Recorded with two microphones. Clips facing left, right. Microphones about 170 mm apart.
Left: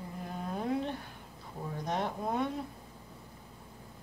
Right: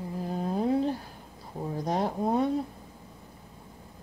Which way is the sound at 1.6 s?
35° right (ahead or behind).